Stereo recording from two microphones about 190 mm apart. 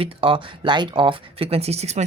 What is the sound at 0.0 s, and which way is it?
Speech, 30° right (ahead or behind).